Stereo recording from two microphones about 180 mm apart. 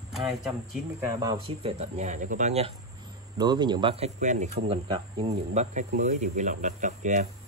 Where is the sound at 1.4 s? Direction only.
35° right (ahead or behind).